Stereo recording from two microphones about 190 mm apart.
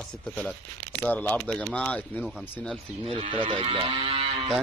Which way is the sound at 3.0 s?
30° right (ahead or behind).